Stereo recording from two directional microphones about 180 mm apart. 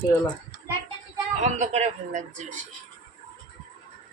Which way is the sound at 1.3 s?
40° right (ahead or behind).